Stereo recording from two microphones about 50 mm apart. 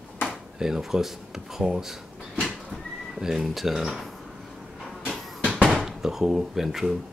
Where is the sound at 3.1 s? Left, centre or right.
Centre.